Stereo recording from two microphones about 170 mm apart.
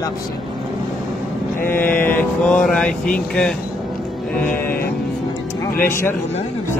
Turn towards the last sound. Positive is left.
turn(degrees=15)  # may be behind; listen again after turning